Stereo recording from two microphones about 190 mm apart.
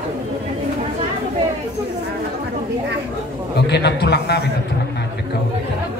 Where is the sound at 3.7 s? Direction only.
60° left (ahead or behind).